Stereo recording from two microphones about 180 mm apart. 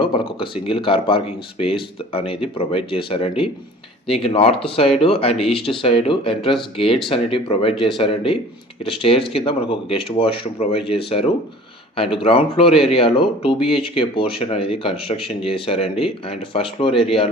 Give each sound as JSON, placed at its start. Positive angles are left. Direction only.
{"t": 0.0, "sound": "speech", "side_deg": 30}